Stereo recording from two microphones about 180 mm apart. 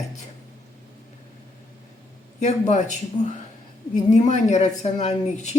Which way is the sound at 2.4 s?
40° left (ahead or behind).